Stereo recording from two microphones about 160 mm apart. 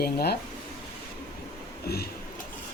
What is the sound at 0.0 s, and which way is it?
Speech, 75° left (ahead or behind).